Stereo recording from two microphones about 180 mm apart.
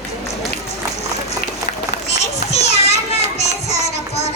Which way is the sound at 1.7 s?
45° left (ahead or behind).